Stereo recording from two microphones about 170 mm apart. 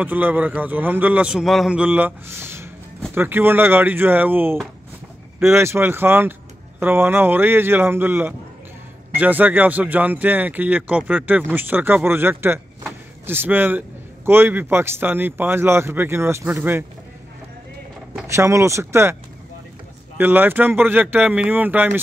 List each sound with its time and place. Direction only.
0.0 s speech: 10° right (ahead or behind)
18.3 s speech: 15° right (ahead or behind)
20.2 s speech: 10° right (ahead or behind)